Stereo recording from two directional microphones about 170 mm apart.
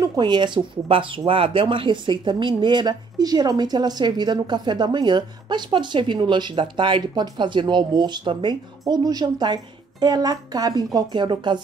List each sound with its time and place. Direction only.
0.0 s speech: 25° right (ahead or behind)